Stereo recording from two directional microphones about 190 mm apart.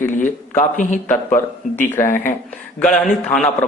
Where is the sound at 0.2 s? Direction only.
40° left (ahead or behind).